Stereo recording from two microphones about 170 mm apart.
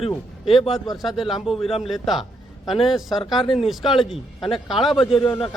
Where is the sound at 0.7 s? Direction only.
Centre (ahead or behind).